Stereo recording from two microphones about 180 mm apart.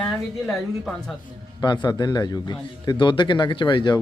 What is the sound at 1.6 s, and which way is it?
A man's voice, 25° left (ahead or behind).